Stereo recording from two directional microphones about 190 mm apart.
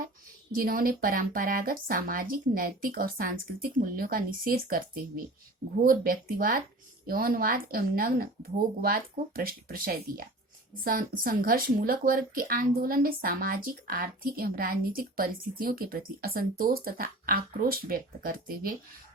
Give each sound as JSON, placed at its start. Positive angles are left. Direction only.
{"t": 0.5, "sound": "speech", "side_deg": -50}